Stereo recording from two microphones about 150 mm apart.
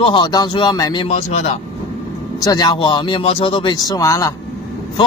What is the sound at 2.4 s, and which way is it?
Speech, 30° left (ahead or behind).